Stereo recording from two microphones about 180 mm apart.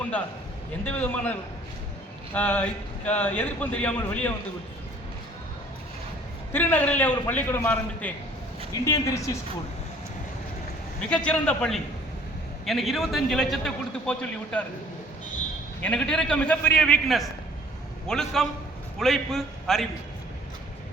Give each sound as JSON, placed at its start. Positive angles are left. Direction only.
{"t": 0.9, "sound": "a man's voice", "side_deg": 10}
{"t": 6.5, "sound": "a man's voice", "side_deg": 10}
{"t": 11.1, "sound": "a man's voice", "side_deg": 5}
{"t": 15.8, "sound": "a man's voice", "side_deg": 5}